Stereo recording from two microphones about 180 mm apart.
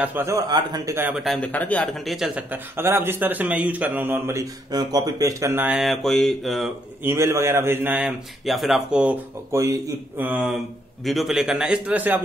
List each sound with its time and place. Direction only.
0.0 s a man's voice: 10° right (ahead or behind)
1.2 s a man's voice: 5° left (ahead or behind)
7.0 s a man's voice: 15° right (ahead or behind)